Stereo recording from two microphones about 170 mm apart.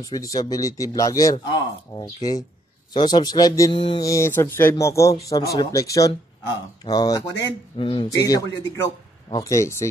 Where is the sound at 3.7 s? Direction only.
35° left (ahead or behind).